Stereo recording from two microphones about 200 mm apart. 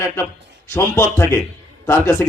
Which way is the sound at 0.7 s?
15° left (ahead or behind).